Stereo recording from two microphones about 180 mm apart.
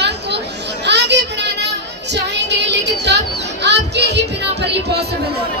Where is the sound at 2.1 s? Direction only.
75° right (ahead or behind).